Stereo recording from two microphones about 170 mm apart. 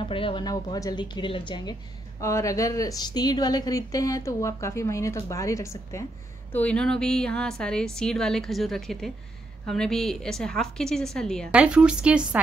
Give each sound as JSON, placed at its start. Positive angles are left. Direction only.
{"t": 0.1, "sound": "a woman's voice", "side_deg": 30}
{"t": 6.5, "sound": "a woman's voice", "side_deg": 5}
{"t": 11.5, "sound": "speech", "side_deg": -5}